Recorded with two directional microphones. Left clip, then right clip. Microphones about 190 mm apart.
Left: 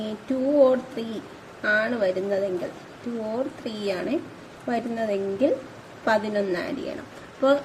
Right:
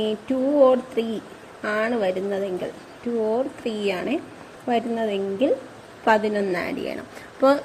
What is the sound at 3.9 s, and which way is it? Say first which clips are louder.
A woman's voice: left 1 dB; 25° right (ahead or behind).